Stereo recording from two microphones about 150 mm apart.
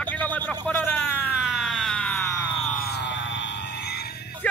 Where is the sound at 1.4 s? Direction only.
Centre (ahead or behind).